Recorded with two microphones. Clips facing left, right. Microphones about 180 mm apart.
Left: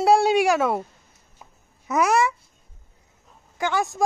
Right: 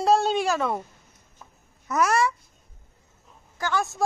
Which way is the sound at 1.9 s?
15° left (ahead or behind).